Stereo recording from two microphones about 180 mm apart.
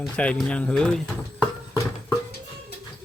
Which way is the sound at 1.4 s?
20° left (ahead or behind).